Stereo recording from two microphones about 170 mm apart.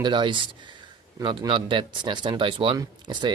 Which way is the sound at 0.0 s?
25° right (ahead or behind).